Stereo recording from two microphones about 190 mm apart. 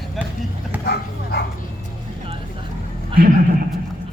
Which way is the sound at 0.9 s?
55° left (ahead or behind).